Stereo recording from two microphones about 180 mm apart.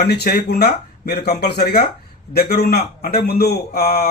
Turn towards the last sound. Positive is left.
turn(degrees=60)  # may be behind; listen again after turning